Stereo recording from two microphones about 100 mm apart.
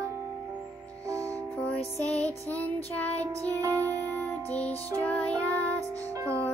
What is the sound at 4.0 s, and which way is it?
Music, 15° left (ahead or behind).